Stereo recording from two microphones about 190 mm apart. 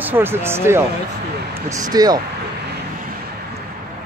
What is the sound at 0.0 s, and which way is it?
Speech, 10° right (ahead or behind).